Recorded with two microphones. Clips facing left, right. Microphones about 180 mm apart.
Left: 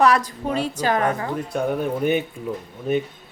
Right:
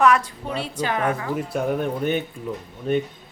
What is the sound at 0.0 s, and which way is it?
A woman's voice, 35° left (ahead or behind).